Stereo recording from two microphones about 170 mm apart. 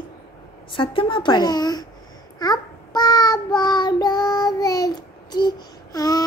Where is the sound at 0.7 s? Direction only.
30° left (ahead or behind).